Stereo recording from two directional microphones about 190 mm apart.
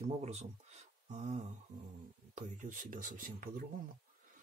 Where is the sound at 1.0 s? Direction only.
35° right (ahead or behind).